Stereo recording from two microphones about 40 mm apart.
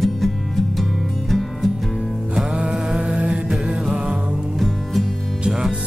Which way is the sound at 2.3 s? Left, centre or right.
Right.